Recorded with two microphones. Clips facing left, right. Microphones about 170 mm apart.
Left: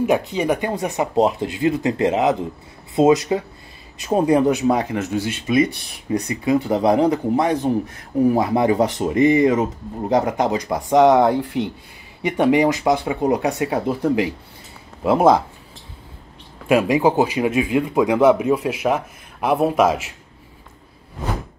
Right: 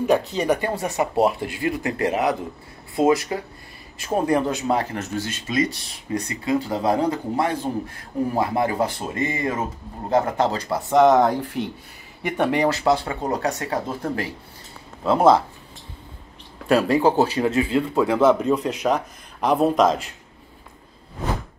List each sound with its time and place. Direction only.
0.0 s speech: 15° left (ahead or behind)
16.6 s speech: 10° left (ahead or behind)